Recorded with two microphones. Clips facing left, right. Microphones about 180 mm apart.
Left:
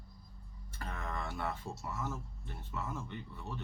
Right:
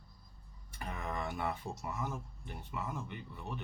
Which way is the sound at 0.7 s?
15° right (ahead or behind).